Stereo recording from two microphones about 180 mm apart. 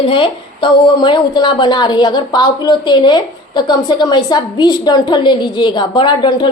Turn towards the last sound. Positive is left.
turn(degrees=25)  # may be behind; listen again after turning